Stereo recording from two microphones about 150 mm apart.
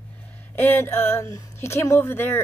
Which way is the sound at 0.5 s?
15° left (ahead or behind).